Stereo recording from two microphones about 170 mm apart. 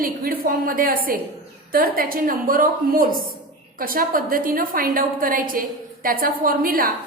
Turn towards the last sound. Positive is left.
turn(degrees=-55)  # may be behind; listen again after turning